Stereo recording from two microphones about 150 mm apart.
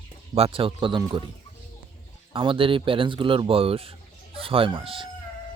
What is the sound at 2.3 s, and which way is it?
Speech, 35° right (ahead or behind).